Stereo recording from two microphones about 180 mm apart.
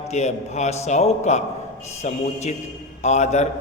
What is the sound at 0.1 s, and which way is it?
A man's voice, 40° left (ahead or behind).